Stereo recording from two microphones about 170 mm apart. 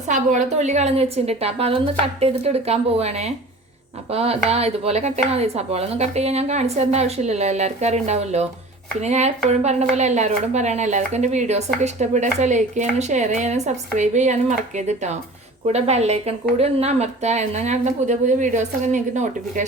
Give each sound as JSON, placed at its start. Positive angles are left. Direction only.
{"t": 0.1, "sound": "speech", "side_deg": -45}